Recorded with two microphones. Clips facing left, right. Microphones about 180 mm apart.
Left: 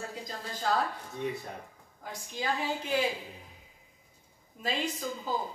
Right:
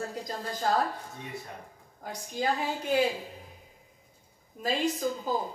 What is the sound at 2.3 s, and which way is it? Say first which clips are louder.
Speech: right 3 dB; 45° right (ahead or behind).